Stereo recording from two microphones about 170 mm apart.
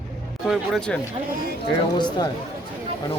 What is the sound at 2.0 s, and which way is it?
Speech, 25° left (ahead or behind).